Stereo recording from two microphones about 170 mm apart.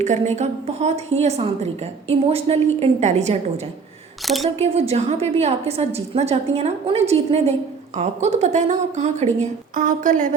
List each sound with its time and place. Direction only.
0.0 s a woman's voice: 45° right (ahead or behind)
4.2 s speech: centre (ahead or behind)
4.6 s a woman's voice: 35° right (ahead or behind)